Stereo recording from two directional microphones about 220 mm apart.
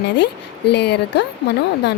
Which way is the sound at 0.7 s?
50° left (ahead or behind).